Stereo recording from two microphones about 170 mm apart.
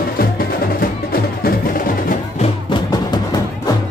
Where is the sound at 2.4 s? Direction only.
25° left (ahead or behind).